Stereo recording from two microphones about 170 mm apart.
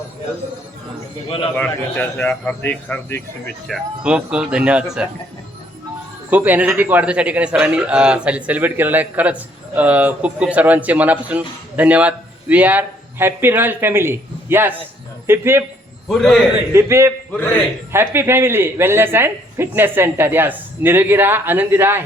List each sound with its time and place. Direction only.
1.5 s a man's voice: 10° left (ahead or behind)
3.7 s speech: 5° right (ahead or behind)
6.3 s speech: 10° right (ahead or behind)
16.0 s speech: 5° left (ahead or behind)
16.7 s speech: 15° right (ahead or behind)